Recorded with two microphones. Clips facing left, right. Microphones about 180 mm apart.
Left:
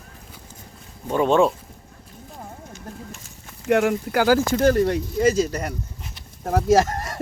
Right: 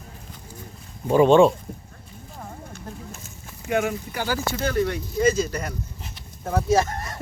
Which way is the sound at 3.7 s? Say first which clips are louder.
Left 5 dB; 75° left (ahead or behind).